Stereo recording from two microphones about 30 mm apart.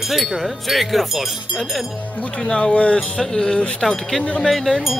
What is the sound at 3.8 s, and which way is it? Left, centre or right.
Speech, centre.